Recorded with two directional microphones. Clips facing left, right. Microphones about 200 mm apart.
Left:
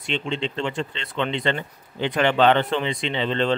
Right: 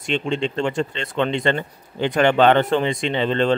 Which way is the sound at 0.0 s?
45° right (ahead or behind).